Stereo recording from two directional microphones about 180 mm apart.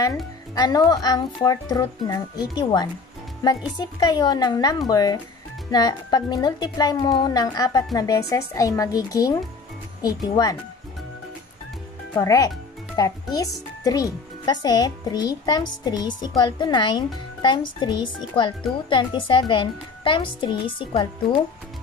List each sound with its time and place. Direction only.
0.6 s speech: 20° left (ahead or behind)
12.1 s speech: 20° left (ahead or behind)